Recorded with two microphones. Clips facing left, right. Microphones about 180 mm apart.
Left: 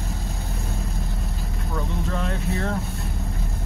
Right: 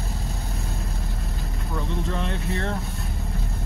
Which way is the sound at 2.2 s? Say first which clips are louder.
Left 1 dB; 5° left (ahead or behind).